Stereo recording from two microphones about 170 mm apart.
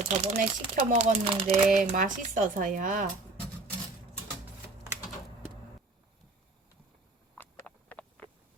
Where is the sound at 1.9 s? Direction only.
50° right (ahead or behind).